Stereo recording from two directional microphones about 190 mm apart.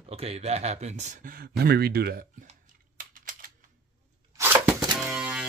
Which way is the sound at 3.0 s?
45° right (ahead or behind).